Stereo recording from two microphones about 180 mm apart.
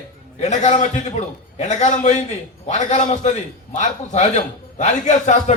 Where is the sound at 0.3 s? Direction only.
40° left (ahead or behind).